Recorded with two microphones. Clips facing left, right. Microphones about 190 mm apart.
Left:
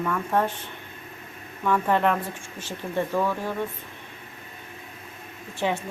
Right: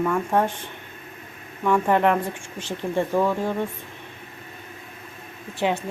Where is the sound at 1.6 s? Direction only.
15° right (ahead or behind).